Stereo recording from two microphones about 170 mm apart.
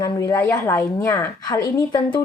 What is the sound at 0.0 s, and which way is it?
A woman's voice, 20° left (ahead or behind).